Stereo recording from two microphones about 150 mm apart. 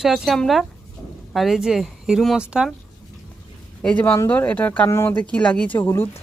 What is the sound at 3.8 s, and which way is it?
Speech, 10° left (ahead or behind).